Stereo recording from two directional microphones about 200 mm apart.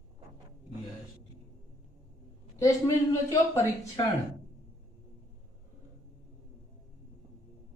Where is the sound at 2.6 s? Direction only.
15° left (ahead or behind).